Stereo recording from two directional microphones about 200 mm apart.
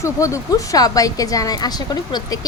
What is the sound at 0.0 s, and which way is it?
A woman's voice, 15° left (ahead or behind).